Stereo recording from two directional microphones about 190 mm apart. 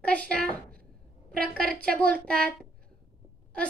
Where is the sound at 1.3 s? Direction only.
50° right (ahead or behind).